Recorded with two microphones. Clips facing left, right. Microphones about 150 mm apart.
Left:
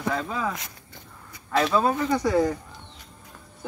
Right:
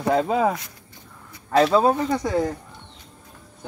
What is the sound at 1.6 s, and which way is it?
Speech, 35° right (ahead or behind).